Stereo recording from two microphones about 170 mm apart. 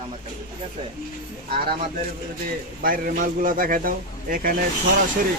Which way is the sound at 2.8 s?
55° right (ahead or behind).